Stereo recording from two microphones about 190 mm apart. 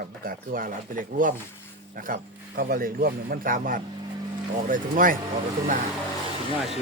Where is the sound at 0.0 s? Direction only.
50° right (ahead or behind).